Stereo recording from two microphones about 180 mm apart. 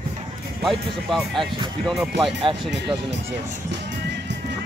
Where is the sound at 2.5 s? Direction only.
25° right (ahead or behind).